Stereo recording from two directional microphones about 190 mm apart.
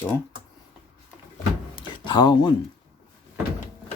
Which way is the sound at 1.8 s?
25° left (ahead or behind).